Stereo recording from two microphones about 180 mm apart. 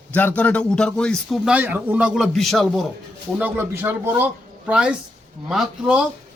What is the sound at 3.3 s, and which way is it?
A man's voice, 10° right (ahead or behind).